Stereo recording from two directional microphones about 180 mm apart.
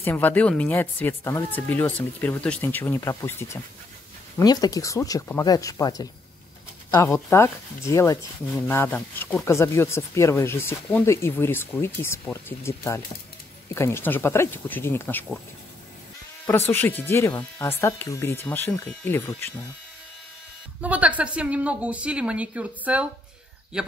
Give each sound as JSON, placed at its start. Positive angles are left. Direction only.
{"t": 0.0, "sound": "speech", "side_deg": 10}
{"t": 16.7, "sound": "speech", "side_deg": 10}
{"t": 20.8, "sound": "a woman's voice", "side_deg": -10}